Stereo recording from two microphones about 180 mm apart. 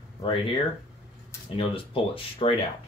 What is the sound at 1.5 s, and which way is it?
Speech, 30° left (ahead or behind).